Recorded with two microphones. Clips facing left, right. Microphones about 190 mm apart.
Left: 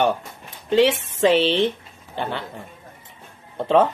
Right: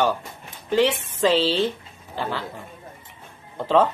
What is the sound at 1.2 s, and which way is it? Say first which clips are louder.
Speech: left 2 dB; 20° left (ahead or behind).